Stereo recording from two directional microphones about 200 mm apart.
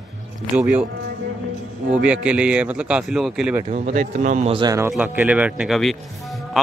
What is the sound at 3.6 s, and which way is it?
Speech, 35° right (ahead or behind).